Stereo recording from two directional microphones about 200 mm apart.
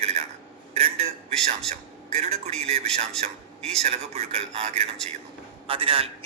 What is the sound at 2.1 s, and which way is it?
A man's voice, 30° right (ahead or behind).